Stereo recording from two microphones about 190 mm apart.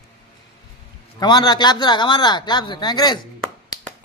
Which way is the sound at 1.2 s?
20° left (ahead or behind).